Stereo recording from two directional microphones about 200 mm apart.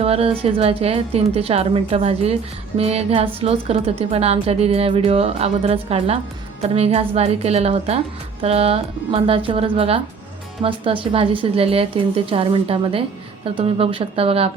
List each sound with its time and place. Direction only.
0.0 s a woman's voice: 30° right (ahead or behind)